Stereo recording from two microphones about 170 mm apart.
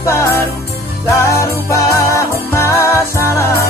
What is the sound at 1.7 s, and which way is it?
Music, 15° left (ahead or behind).